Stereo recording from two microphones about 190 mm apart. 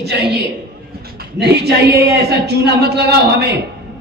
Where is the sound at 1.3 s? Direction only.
60° right (ahead or behind).